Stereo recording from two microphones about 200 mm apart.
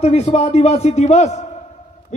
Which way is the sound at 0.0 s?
35° left (ahead or behind).